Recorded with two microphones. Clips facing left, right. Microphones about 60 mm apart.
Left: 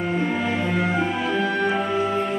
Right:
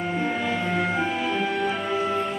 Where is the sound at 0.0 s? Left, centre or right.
Centre.